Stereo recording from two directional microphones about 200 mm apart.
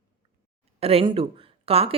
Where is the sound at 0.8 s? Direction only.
30° right (ahead or behind).